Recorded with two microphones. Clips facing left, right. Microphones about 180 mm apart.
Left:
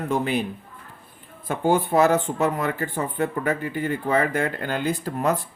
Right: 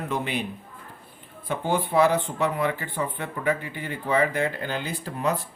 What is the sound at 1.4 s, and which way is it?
Speech, 45° left (ahead or behind).